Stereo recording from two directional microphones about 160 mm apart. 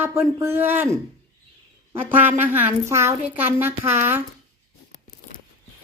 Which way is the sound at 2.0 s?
10° right (ahead or behind).